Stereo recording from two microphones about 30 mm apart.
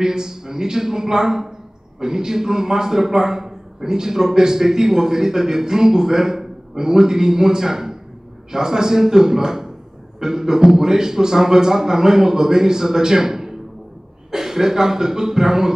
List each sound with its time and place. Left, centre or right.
0.0 s a man's voice: centre